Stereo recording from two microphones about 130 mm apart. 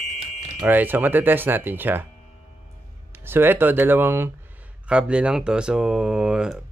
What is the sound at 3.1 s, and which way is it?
Speech, 15° right (ahead or behind).